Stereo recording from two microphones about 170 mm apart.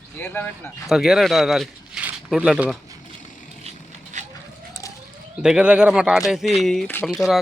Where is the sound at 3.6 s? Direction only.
45° right (ahead or behind).